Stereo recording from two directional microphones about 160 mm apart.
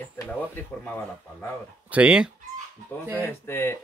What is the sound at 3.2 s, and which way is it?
Speech, 15° left (ahead or behind).